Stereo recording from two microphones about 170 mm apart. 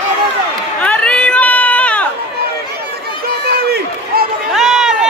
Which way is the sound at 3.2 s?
70° right (ahead or behind).